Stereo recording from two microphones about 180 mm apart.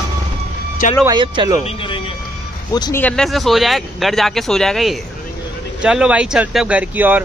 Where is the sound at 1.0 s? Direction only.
25° right (ahead or behind).